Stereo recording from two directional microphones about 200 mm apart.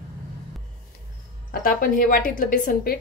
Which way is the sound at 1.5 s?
45° left (ahead or behind).